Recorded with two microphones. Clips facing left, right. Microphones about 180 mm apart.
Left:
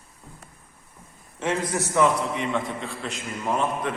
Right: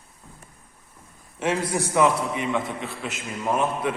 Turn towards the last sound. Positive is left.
turn(degrees=-10)  # may be behind; listen again after turning